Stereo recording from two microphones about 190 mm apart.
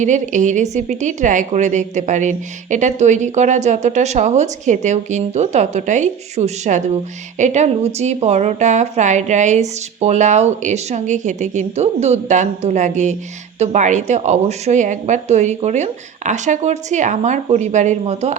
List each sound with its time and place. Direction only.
0.0 s a woman's voice: 40° right (ahead or behind)